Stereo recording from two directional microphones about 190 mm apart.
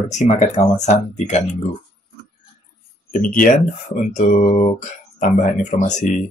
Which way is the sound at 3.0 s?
45° left (ahead or behind).